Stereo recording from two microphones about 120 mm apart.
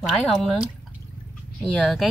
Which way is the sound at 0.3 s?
Centre (ahead or behind).